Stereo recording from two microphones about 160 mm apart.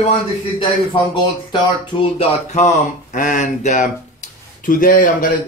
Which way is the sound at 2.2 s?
40° left (ahead or behind).